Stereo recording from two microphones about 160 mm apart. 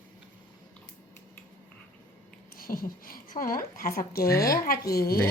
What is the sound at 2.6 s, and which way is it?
A woman's voice, 65° left (ahead or behind).